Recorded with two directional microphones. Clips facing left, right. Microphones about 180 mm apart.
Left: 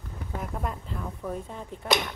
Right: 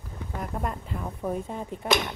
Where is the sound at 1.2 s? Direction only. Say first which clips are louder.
Right 4 dB; 40° right (ahead or behind).